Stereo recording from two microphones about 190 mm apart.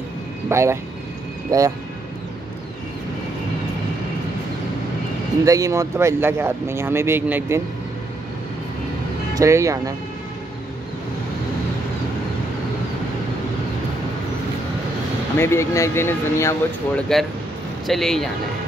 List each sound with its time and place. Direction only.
0.5 s speech: 15° right (ahead or behind)
5.4 s speech: 15° right (ahead or behind)
9.3 s speech: 15° right (ahead or behind)
15.3 s speech: 15° left (ahead or behind)
17.8 s speech: centre (ahead or behind)